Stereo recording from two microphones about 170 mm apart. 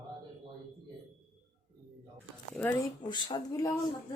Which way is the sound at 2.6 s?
10° left (ahead or behind).